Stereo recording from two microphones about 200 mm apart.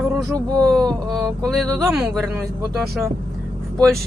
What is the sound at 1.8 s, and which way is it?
Speech, centre (ahead or behind).